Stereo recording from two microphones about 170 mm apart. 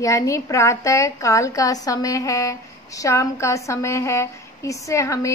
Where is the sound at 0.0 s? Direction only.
20° left (ahead or behind).